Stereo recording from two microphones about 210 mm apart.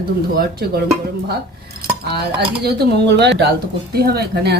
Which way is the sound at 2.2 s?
50° right (ahead or behind).